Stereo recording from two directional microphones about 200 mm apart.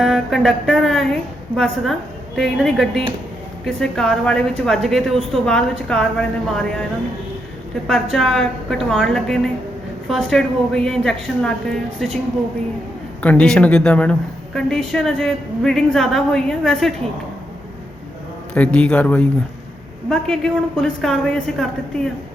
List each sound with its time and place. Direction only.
0.0 s a woman's voice: centre (ahead or behind)
7.9 s a woman's voice: centre (ahead or behind)
13.2 s a woman's voice: 5° left (ahead or behind)
18.5 s a man's voice: 5° left (ahead or behind)